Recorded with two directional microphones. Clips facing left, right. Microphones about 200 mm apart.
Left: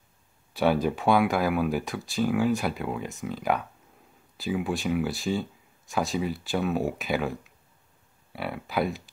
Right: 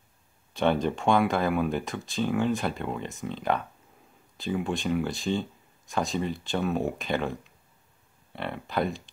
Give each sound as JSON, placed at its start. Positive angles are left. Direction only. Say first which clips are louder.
{"t": 0.5, "sound": "speech", "louder": "left 1 dB", "side_deg": 5}